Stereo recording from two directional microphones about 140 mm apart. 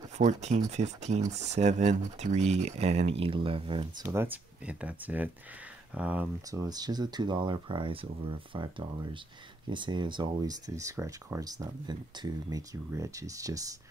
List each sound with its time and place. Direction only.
0.2 s speech: 55° right (ahead or behind); by 4.1 s 35° right (ahead or behind)
4.1 s speech: 15° right (ahead or behind)
6.5 s speech: 25° right (ahead or behind)